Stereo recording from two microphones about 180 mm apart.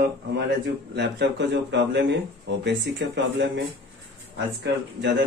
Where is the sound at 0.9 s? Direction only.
70° right (ahead or behind).